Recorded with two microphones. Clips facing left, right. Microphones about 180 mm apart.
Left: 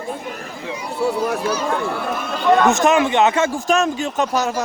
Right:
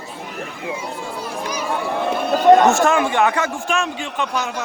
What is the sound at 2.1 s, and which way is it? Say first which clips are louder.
Speech: right 5 dB; 35° right (ahead or behind).